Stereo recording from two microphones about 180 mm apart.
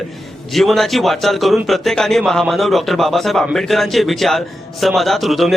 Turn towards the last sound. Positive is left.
turn(degrees=0)  # may be behind; listen again after turning